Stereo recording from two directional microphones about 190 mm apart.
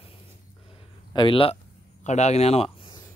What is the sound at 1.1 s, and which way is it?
Speech, 25° left (ahead or behind).